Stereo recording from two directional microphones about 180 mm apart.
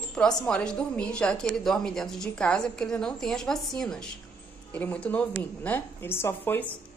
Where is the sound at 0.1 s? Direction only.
5° left (ahead or behind).